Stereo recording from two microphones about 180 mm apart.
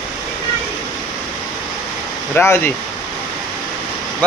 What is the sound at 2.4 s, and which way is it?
Speech, 10° left (ahead or behind).